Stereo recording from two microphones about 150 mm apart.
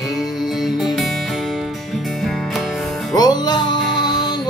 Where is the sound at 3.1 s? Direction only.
25° left (ahead or behind).